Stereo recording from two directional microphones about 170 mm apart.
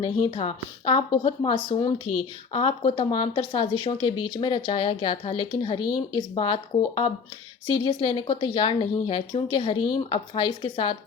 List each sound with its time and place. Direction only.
0.0 s speech: 30° left (ahead or behind)